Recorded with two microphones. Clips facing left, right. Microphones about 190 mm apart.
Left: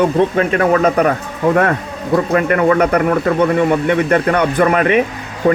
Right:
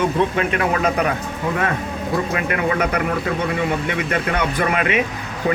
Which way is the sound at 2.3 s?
45° left (ahead or behind).